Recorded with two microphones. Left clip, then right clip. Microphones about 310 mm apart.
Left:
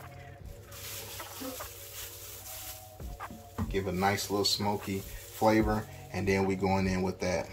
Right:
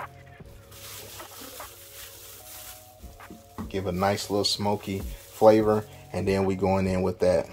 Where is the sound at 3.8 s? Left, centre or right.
Right.